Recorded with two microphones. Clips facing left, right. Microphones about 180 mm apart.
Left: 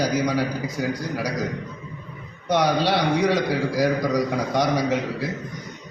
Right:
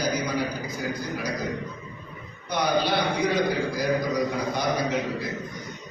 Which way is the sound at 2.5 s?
90° left.